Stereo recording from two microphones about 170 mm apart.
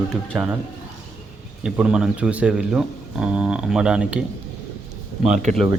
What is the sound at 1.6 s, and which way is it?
Speech, 5° right (ahead or behind).